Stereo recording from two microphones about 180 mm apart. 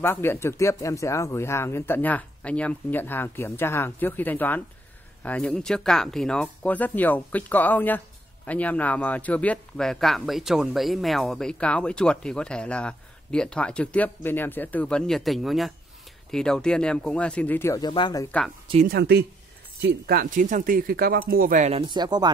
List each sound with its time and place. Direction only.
0.0 s speech: 10° left (ahead or behind)
18.9 s speech: 65° right (ahead or behind); by 21.8 s 40° right (ahead or behind)
21.8 s speech: 25° right (ahead or behind)